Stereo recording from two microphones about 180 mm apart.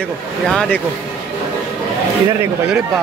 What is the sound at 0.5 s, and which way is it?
Speech, 5° left (ahead or behind).